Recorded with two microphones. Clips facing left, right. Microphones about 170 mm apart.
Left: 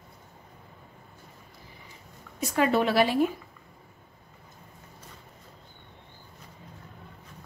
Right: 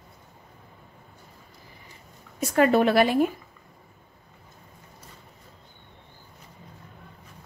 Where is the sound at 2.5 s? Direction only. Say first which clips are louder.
Right 4 dB; 55° right (ahead or behind).